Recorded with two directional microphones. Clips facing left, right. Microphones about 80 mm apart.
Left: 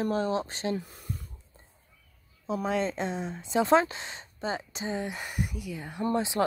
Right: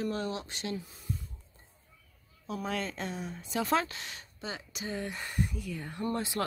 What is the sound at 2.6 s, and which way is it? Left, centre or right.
Speech, left.